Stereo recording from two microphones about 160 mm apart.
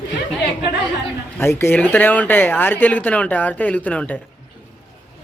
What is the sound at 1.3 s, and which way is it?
Speech, 15° left (ahead or behind).